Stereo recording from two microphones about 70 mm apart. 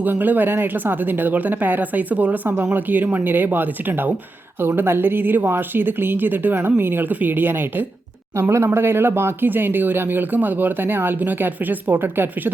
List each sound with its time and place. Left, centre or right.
0.0 s speech: right
8.4 s speech: right